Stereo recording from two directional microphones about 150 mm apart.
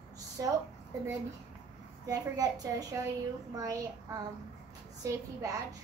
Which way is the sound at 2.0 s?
25° right (ahead or behind).